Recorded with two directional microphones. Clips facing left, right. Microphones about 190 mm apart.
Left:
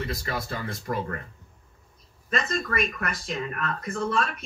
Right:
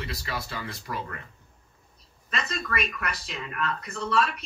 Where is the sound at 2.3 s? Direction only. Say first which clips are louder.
Left 4 dB; 45° left (ahead or behind).